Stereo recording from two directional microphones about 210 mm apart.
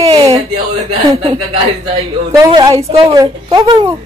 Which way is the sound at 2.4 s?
20° right (ahead or behind).